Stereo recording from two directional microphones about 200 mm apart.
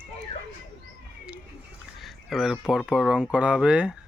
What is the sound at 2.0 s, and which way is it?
Speech, centre (ahead or behind).